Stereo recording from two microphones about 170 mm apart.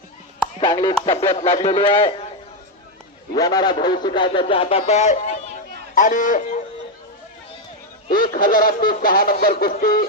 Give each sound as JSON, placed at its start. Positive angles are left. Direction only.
{"t": 0.6, "sound": "music", "side_deg": 25}
{"t": 1.0, "sound": "speech", "side_deg": 35}
{"t": 3.3, "sound": "a man's voice", "side_deg": 20}
{"t": 8.0, "sound": "speech", "side_deg": 50}